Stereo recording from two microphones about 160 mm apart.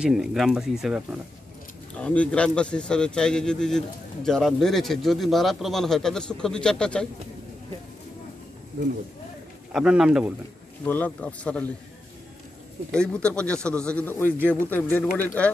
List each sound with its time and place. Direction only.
0.0 s speech: 5° right (ahead or behind)
2.0 s speech: 10° left (ahead or behind)
9.7 s speech: 5° right (ahead or behind)
10.9 s a man's voice: 10° left (ahead or behind)
12.9 s a man's voice: 5° left (ahead or behind)